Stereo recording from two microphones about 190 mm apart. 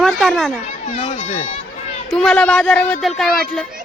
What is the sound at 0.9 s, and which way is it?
Speech, 35° left (ahead or behind).